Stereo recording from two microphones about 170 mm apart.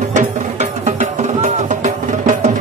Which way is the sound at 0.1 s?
45° right (ahead or behind).